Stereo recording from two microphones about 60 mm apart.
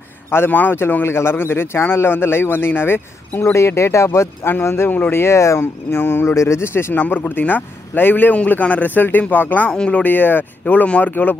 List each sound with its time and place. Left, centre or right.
0.3 s speech: left
4.5 s speech: left
7.0 s speech: left
9.7 s speech: centre
10.0 s speech: left